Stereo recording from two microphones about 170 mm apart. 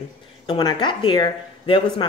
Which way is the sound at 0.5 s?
30° left (ahead or behind).